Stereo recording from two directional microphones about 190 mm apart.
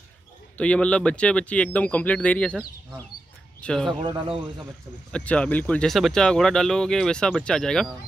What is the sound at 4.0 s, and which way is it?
Speech, 25° right (ahead or behind).